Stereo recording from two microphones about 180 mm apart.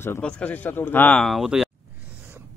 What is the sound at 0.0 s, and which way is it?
Speech, 10° left (ahead or behind).